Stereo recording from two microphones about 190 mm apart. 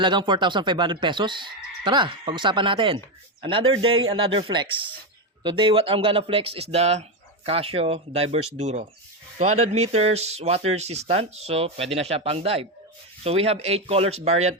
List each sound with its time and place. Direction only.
0.0 s speech: 25° right (ahead or behind)